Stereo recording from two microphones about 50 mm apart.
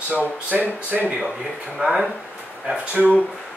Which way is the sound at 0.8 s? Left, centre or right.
Right.